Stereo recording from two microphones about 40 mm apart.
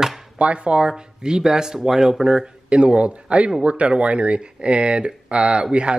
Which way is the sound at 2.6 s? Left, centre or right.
Right.